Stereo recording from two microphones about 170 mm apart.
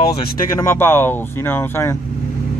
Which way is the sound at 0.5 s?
15° left (ahead or behind).